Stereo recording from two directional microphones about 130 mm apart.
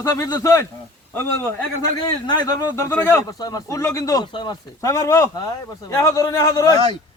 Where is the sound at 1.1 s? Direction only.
15° left (ahead or behind).